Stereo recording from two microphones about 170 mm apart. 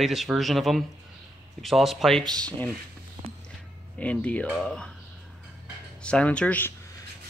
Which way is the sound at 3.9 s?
10° left (ahead or behind).